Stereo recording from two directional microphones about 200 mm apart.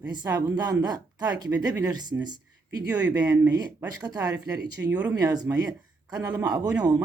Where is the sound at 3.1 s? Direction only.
15° right (ahead or behind).